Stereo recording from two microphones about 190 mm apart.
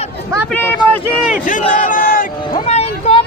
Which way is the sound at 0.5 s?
10° left (ahead or behind).